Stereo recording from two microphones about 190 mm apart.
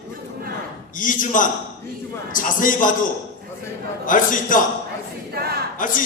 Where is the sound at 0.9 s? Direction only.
45° left (ahead or behind).